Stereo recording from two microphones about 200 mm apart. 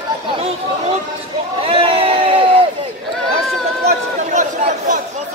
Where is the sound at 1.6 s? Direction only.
25° right (ahead or behind).